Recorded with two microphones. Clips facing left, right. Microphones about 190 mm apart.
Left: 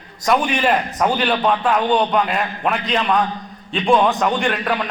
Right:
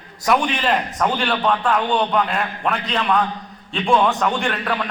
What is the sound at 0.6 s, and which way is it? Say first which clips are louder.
A man's voice: left 2 dB; 10° left (ahead or behind).